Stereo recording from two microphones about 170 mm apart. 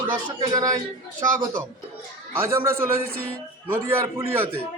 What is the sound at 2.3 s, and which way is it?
A man's voice, 15° right (ahead or behind).